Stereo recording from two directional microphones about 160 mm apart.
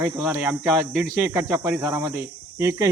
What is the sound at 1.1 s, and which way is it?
Speech, 15° right (ahead or behind).